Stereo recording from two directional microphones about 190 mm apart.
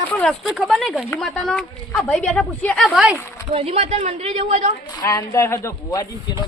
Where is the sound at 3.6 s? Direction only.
30° right (ahead or behind).